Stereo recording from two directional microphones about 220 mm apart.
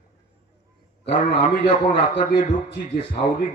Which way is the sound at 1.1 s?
35° left (ahead or behind).